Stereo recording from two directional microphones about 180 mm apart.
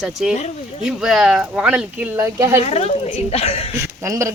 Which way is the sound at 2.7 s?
35° left (ahead or behind).